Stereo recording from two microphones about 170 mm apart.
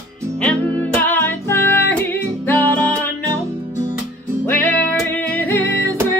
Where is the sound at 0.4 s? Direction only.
10° left (ahead or behind).